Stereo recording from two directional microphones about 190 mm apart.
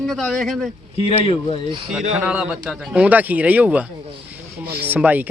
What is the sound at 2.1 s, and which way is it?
Speech, 5° right (ahead or behind).